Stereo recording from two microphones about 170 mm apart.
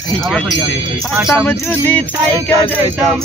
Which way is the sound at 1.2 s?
10° left (ahead or behind).